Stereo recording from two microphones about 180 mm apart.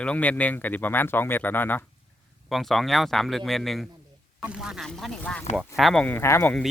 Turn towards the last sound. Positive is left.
turn(degrees=10)  # may be behind; listen again after turning